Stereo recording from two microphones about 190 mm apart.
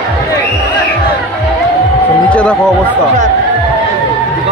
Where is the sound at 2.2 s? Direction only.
5° left (ahead or behind).